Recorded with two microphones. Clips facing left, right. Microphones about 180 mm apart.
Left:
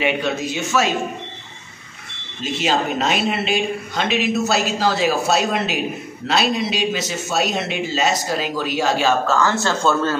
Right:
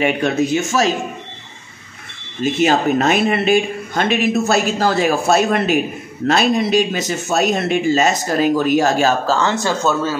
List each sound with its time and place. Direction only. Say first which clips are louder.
0.0 s speech: right 4 dB; 50° right (ahead or behind)
2.4 s speech: right 6 dB; 50° right (ahead or behind)
9.3 s speech: right 1 dB; 20° right (ahead or behind)